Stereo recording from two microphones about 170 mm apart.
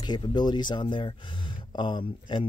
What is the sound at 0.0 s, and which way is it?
Speech, 25° left (ahead or behind).